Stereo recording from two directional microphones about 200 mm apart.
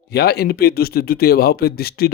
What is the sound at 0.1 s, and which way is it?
Speech, 55° left (ahead or behind).